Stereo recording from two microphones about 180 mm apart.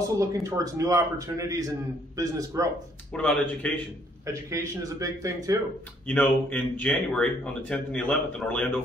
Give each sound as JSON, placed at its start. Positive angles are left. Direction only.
{"t": 0.2, "sound": "speech", "side_deg": -15}
{"t": 3.1, "sound": "speech", "side_deg": 5}
{"t": 4.3, "sound": "speech", "side_deg": -15}
{"t": 6.0, "sound": "speech", "side_deg": 10}